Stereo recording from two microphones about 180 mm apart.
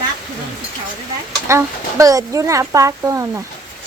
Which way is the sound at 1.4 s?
15° right (ahead or behind).